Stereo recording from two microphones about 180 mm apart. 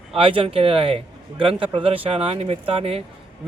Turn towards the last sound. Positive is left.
turn(degrees=-30)  # may be behind; listen again after turning